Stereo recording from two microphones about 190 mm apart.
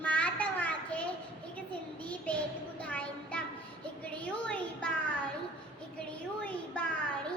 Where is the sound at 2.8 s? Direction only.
5° left (ahead or behind).